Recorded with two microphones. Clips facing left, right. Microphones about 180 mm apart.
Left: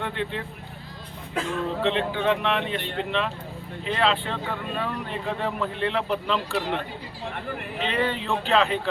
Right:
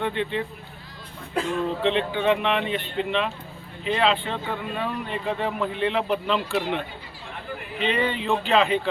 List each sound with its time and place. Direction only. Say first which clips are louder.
0.0 s speech: right 4 dB; centre (ahead or behind)
1.8 s speech: even; centre (ahead or behind)